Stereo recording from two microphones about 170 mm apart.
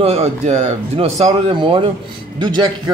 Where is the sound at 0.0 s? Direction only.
35° right (ahead or behind).